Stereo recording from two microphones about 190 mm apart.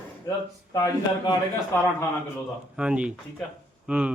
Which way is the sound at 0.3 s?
15° left (ahead or behind).